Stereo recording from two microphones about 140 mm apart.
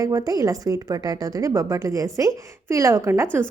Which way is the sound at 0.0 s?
25° right (ahead or behind).